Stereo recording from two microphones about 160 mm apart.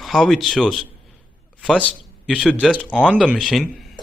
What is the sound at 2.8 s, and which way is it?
Speech, 10° left (ahead or behind).